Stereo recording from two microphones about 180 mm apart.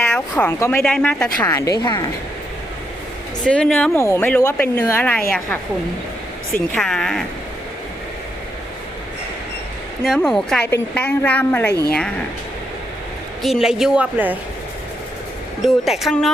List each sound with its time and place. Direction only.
0.0 s a woman's voice: 10° left (ahead or behind)
3.4 s a woman's voice: 5° left (ahead or behind)
6.7 s a woman's voice: 5° left (ahead or behind)
10.0 s a woman's voice: centre (ahead or behind)
13.4 s a woman's voice: centre (ahead or behind)
15.6 s a woman's voice: centre (ahead or behind)